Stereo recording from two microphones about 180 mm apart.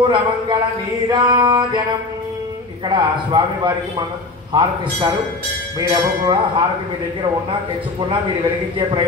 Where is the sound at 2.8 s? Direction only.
25° right (ahead or behind).